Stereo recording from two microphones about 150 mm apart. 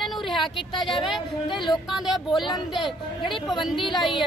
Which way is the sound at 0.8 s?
35° left (ahead or behind).